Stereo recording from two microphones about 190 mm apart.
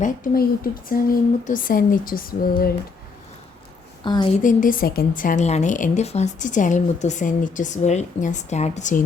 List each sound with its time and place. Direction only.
0.0 s speech: 50° left (ahead or behind)
4.0 s a woman's voice: 25° left (ahead or behind)
4.4 s a woman's voice: 45° left (ahead or behind)